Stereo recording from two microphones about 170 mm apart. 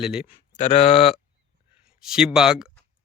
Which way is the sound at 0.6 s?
40° left (ahead or behind).